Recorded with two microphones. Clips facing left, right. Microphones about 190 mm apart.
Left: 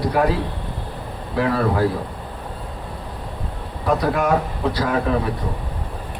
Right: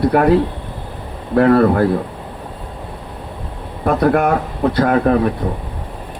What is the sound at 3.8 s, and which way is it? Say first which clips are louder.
Speech: right 5 dB; 55° right (ahead or behind).